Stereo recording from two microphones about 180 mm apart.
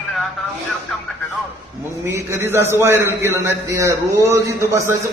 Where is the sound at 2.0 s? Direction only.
15° right (ahead or behind).